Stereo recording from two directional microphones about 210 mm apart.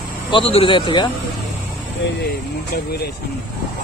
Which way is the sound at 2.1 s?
50° left (ahead or behind).